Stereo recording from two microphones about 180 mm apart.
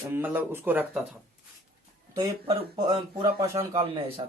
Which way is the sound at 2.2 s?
25° right (ahead or behind).